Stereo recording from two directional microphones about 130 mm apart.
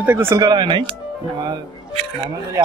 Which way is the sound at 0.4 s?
35° right (ahead or behind).